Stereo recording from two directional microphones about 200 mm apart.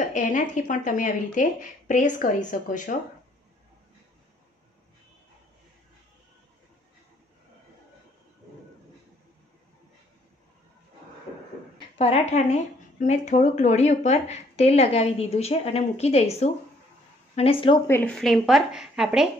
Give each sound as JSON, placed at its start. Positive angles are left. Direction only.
{"t": 0.0, "sound": "a woman's voice", "side_deg": 40}
{"t": 12.0, "sound": "a woman's voice", "side_deg": 30}
{"t": 17.8, "sound": "a woman's voice", "side_deg": 10}